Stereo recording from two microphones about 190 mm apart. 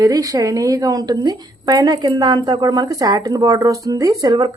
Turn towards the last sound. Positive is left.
turn(degrees=-20)  # may be behind; listen again after turning